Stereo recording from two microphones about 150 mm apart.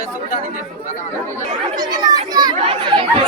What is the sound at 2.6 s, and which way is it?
Speech, 35° right (ahead or behind).